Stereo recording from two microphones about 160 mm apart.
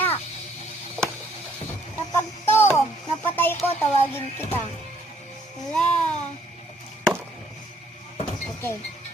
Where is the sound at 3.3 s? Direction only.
15° left (ahead or behind).